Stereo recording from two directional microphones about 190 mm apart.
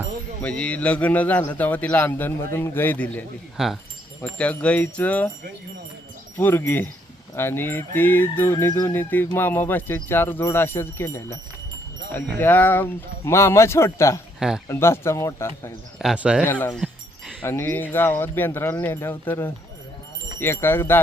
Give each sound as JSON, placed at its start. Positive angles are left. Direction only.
{"t": 0.4, "sound": "music", "side_deg": 5}
{"t": 3.6, "sound": "speech", "side_deg": 0}
{"t": 4.4, "sound": "music", "side_deg": 5}
{"t": 6.3, "sound": "music", "side_deg": 10}
{"t": 12.4, "sound": "music", "side_deg": 10}
{"t": 14.3, "sound": "speech", "side_deg": -5}
{"t": 14.7, "sound": "music", "side_deg": 15}
{"t": 16.0, "sound": "speech", "side_deg": -5}
{"t": 16.7, "sound": "a sound", "side_deg": -5}
{"t": 17.4, "sound": "music", "side_deg": 10}